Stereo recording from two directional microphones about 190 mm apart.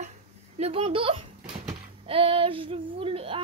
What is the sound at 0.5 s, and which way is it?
A child's voice, 35° right (ahead or behind).